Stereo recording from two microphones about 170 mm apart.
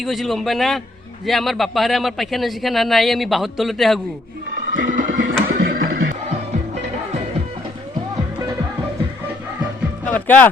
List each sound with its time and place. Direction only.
0.0 s speech: centre (ahead or behind)
4.7 s music: 50° right (ahead or behind)
10.1 s music: 10° left (ahead or behind)